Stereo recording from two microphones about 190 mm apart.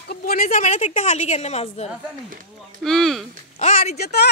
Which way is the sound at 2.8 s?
Centre (ahead or behind).